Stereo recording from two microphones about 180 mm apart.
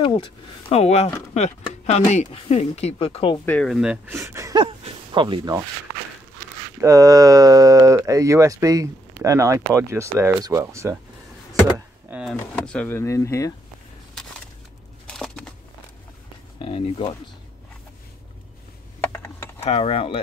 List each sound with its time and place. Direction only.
0.0 s speech: 30° left (ahead or behind)
3.4 s speech: 5° left (ahead or behind); by 4.6 s 15° right (ahead or behind)
4.6 s a sound: 30° right (ahead or behind)
6.8 s speech: 20° right (ahead or behind)
12.1 s speech: 5° right (ahead or behind)
12.6 s speech: 10° left (ahead or behind)
15.0 s a sound: 5° left (ahead or behind)
16.6 s speech: 30° left (ahead or behind)
18.9 s typing: 10° left (ahead or behind)
19.6 s speech: 35° left (ahead or behind)